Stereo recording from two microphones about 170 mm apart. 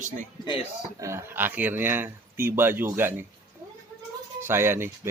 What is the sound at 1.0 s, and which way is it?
A man's voice, 15° right (ahead or behind).